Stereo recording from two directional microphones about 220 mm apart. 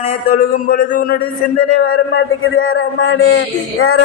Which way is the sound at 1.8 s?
65° left (ahead or behind).